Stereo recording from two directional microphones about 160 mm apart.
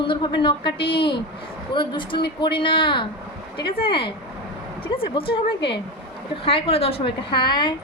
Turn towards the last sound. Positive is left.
turn(degrees=30)  # may be behind; listen again after turning